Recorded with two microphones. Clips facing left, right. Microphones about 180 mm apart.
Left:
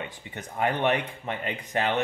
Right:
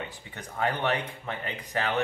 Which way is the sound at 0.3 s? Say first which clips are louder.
Left 2 dB; 20° left (ahead or behind).